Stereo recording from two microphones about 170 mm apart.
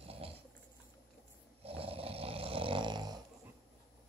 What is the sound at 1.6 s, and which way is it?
Snoring, 35° right (ahead or behind).